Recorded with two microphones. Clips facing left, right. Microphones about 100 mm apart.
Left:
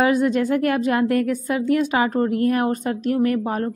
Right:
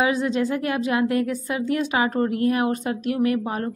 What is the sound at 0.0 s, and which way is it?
A woman's voice, 50° left (ahead or behind).